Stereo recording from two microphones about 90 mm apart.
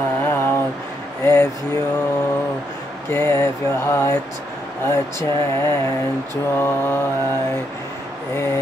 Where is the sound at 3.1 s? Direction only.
30° left (ahead or behind).